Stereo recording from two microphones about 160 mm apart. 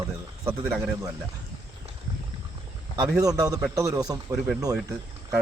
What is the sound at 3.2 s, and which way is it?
A man's voice, 20° right (ahead or behind).